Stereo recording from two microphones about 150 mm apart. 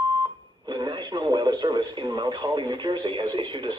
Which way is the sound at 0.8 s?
30° right (ahead or behind).